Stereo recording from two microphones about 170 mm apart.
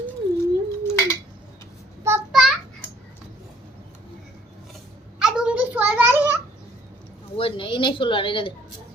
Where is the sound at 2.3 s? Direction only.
Centre (ahead or behind).